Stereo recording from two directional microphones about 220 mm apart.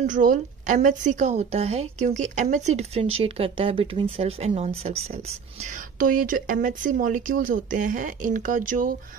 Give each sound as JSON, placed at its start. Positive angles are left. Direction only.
{"t": 0.0, "sound": "a woman's voice", "side_deg": -35}
{"t": 5.9, "sound": "speech", "side_deg": -40}